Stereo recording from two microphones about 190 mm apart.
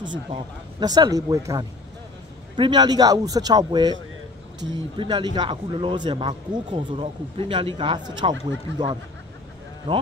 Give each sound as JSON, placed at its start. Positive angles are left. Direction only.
{"t": 0.0, "sound": "a man's voice", "side_deg": -25}